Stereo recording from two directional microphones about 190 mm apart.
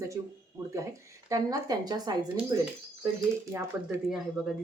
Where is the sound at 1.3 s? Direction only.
20° right (ahead or behind).